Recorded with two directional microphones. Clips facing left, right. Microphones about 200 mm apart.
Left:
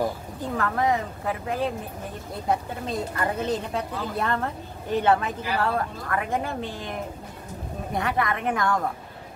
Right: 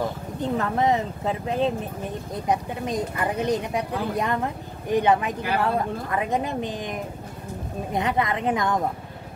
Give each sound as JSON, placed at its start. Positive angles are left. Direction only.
{"t": 0.4, "sound": "speech", "side_deg": -20}